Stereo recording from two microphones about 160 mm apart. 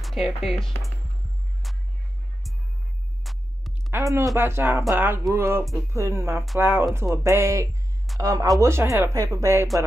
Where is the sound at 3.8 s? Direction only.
20° right (ahead or behind).